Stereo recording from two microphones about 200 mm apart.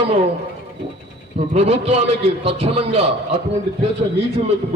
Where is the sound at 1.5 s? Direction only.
30° right (ahead or behind).